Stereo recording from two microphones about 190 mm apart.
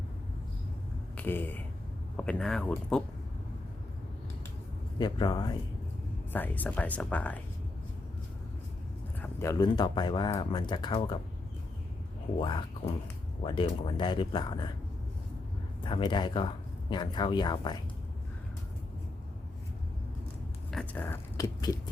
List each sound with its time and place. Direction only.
1.1 s speech: 10° left (ahead or behind)
4.9 s speech: 25° left (ahead or behind)
6.3 s speech: 10° left (ahead or behind)
9.2 s speech: 15° left (ahead or behind)
12.4 s speech: 25° left (ahead or behind)
15.8 s speech: 25° left (ahead or behind)
20.7 s speech: 5° left (ahead or behind)